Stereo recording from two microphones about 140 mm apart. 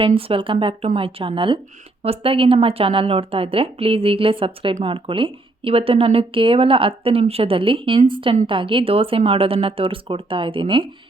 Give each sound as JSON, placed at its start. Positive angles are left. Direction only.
{"t": 0.0, "sound": "speech", "side_deg": -40}